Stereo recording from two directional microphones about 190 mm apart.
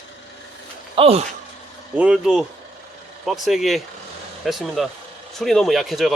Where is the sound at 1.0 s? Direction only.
30° right (ahead or behind).